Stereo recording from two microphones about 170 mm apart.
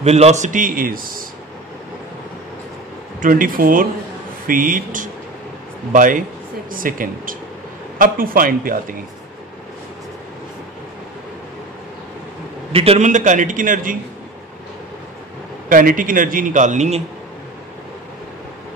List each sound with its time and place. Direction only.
0.0 s a man's voice: 40° right (ahead or behind); by 1.2 s 55° right (ahead or behind)
3.2 s a man's voice: 55° right (ahead or behind)
12.7 s a man's voice: 35° right (ahead or behind); by 13.9 s 50° right (ahead or behind)
15.7 s a man's voice: 55° right (ahead or behind)